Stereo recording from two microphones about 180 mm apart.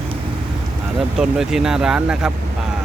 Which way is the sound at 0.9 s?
5° right (ahead or behind).